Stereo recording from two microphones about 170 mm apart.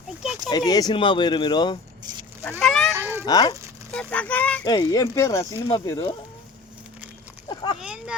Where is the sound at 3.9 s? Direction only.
5° left (ahead or behind).